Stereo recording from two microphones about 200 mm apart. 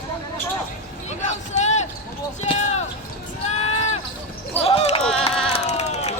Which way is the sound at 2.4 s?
35° left (ahead or behind).